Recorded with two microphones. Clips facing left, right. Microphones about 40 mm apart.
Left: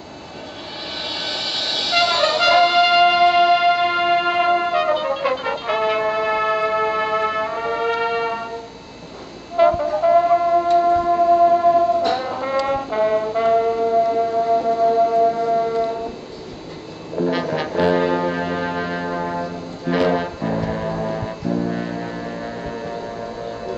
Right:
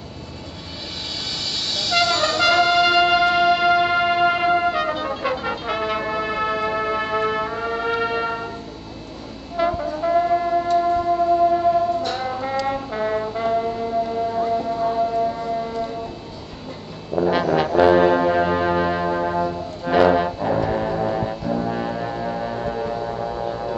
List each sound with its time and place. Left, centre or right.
1.3 s vehicle: left
5.2 s music: centre
9.6 s music: centre
10.9 s a sound: centre
12.2 s music: centre
12.6 s brass instrument: centre
14.5 s singing bowl: centre
14.8 s a sound: centre
17.3 s brass instrument: centre